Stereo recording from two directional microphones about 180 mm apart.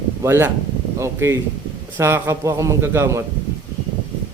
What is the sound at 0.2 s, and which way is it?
A man's voice, 15° right (ahead or behind).